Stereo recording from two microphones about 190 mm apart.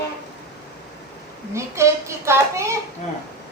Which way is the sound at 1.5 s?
15° right (ahead or behind).